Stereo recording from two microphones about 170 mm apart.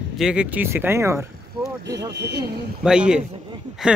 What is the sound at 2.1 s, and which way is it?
Speech, 85° right.